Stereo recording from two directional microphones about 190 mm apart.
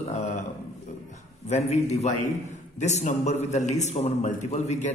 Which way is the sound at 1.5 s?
35° left (ahead or behind).